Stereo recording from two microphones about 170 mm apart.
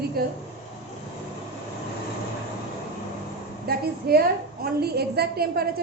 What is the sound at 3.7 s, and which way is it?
A woman's voice, 65° right (ahead or behind).